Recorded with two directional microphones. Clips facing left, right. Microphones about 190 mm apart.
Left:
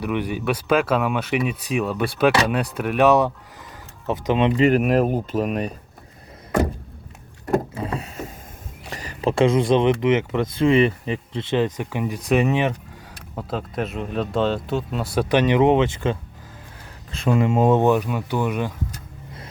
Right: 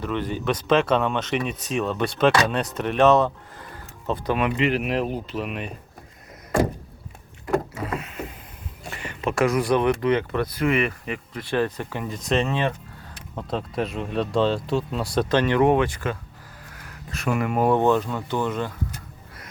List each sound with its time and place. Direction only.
0.0 s speech: 10° left (ahead or behind)
4.5 s speech: 45° left (ahead or behind)
7.4 s vehicle: 30° left (ahead or behind)
8.9 s speech: 35° left (ahead or behind); by 12.7 s 15° left (ahead or behind)
13.3 s speech: centre (ahead or behind)